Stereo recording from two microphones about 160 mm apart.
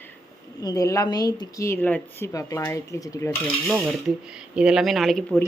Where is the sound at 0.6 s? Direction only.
20° left (ahead or behind).